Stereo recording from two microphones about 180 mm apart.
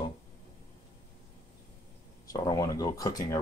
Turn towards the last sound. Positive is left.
turn(degrees=20)  # may be behind; listen again after turning